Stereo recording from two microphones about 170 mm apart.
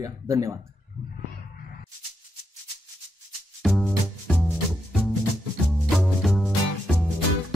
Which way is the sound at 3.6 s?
Centre (ahead or behind).